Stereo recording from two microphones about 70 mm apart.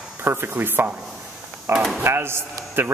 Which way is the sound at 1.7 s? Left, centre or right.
Right.